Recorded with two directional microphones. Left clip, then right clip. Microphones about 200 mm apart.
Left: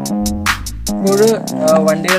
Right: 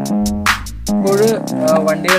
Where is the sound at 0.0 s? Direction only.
Centre (ahead or behind).